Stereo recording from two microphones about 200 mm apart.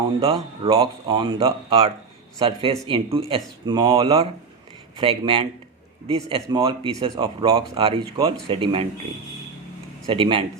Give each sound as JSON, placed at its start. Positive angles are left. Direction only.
{"t": 0.2, "sound": "speech", "side_deg": -30}
{"t": 10.1, "sound": "speech", "side_deg": -25}